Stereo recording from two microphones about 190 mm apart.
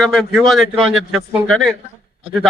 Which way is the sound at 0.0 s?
Centre (ahead or behind).